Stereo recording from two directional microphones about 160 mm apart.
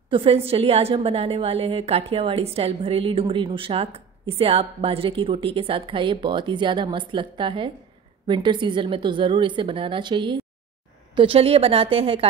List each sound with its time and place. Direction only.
0.1 s a woman's voice: 35° right (ahead or behind)